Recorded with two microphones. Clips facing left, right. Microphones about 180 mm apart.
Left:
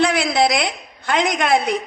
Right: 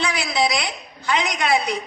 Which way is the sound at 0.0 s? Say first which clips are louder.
Left 5 dB; 55° left (ahead or behind).